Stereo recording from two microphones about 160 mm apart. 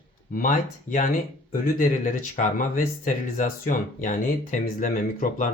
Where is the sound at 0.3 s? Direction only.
55° left (ahead or behind).